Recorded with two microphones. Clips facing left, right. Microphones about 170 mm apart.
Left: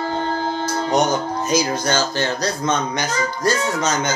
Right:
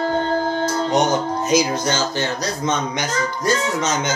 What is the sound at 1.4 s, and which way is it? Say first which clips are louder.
Speech: right 1 dB; 20° right (ahead or behind).